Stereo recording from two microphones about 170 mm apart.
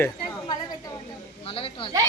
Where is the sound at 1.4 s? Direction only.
35° left (ahead or behind).